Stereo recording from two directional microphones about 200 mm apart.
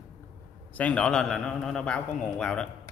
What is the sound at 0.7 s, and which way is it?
A man's voice, 5° left (ahead or behind).